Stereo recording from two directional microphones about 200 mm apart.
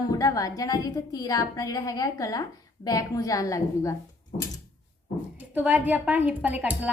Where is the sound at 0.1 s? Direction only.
15° left (ahead or behind).